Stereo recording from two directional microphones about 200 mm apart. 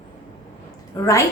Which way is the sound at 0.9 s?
15° left (ahead or behind).